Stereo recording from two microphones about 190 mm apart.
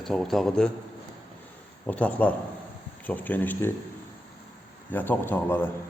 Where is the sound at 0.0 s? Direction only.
Centre (ahead or behind).